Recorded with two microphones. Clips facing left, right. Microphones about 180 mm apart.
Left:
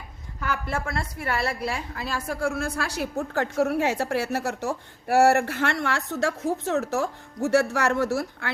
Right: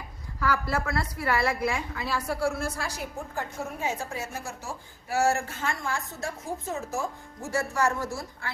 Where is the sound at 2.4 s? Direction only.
70° left (ahead or behind).